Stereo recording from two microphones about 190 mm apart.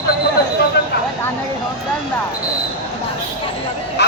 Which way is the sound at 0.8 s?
65° left (ahead or behind).